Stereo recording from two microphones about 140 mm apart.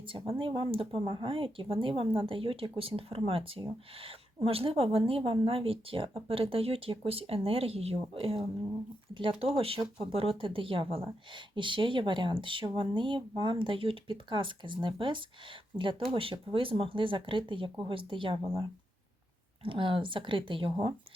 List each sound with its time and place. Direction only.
0.1 s speech: 40° right (ahead or behind)
19.6 s speech: 40° right (ahead or behind)